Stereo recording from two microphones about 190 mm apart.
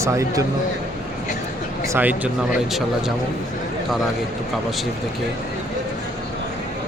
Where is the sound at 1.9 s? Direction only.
10° right (ahead or behind).